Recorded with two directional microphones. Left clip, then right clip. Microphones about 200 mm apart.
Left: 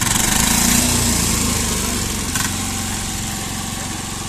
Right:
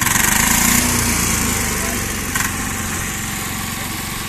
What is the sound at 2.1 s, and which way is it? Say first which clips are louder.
Vehicle: right 1 dB; 25° left (ahead or behind).